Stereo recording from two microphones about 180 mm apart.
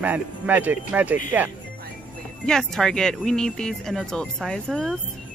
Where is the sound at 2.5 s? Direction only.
5° left (ahead or behind).